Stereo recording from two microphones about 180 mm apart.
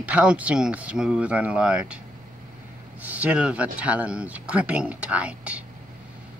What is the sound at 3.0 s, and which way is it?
Speech, 10° right (ahead or behind).